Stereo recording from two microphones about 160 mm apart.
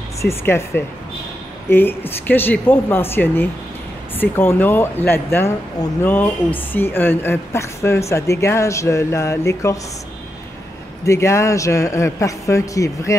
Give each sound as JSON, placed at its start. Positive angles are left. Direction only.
{"t": 0.2, "sound": "speech", "side_deg": 15}
{"t": 11.1, "sound": "a man's voice", "side_deg": 20}